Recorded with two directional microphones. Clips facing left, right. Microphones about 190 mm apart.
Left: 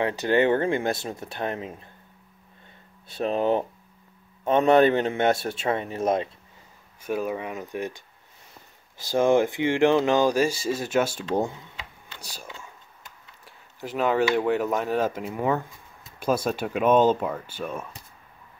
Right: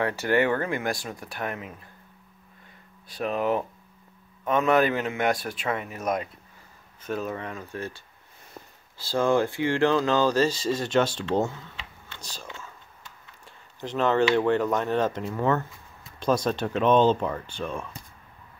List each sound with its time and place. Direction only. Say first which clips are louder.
0.0 s speech: left 2 dB; 20° left (ahead or behind)
3.1 s speech: left 3 dB; 25° left (ahead or behind)
7.0 s speech: left 3 dB; 10° left (ahead or behind)
8.6 s a sound: right 8 dB; 60° right (ahead or behind)
8.9 s speech: left 3 dB; 20° left (ahead or behind)
12.2 s a sound: even; 10° left (ahead or behind)
13.5 s speech: even; 5° left (ahead or behind)